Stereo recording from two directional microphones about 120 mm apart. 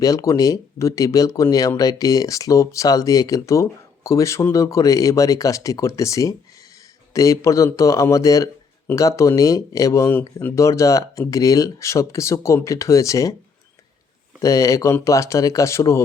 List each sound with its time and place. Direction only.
0.0 s speech: 30° left (ahead or behind)
14.4 s speech: 25° left (ahead or behind)